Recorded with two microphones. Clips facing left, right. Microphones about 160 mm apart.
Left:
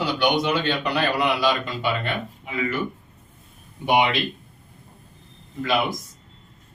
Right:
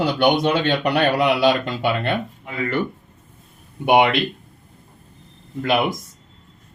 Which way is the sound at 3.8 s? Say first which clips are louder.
Right 4 dB; 60° right (ahead or behind).